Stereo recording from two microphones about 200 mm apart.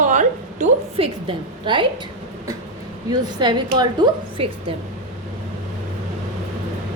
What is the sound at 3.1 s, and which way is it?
A woman's voice, 20° right (ahead or behind).